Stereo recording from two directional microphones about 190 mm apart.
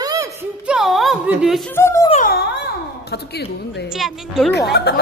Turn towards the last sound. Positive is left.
turn(degrees=60)  # may be behind; listen again after turning